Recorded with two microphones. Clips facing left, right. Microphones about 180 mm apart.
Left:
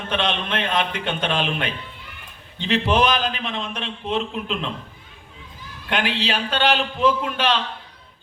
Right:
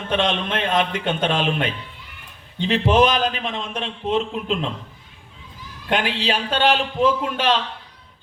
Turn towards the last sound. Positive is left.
turn(degrees=-45)  # may be behind; listen again after turning